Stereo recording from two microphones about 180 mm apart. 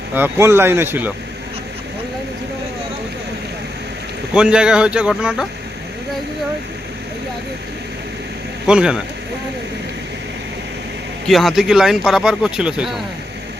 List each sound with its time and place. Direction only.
0.1 s speech: 15° right (ahead or behind)
4.4 s speech: 5° right (ahead or behind)
8.6 s speech: 5° right (ahead or behind)
11.3 s speech: centre (ahead or behind)